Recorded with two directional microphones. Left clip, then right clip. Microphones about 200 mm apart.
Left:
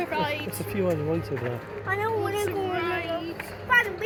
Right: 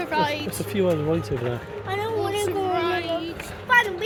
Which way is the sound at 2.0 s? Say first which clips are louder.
Right 3 dB; 50° right (ahead or behind).